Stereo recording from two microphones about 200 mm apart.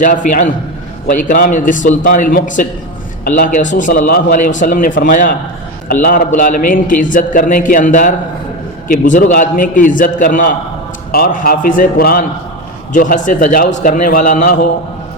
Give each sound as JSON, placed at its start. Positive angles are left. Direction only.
{"t": 0.0, "sound": "a man's voice", "side_deg": 40}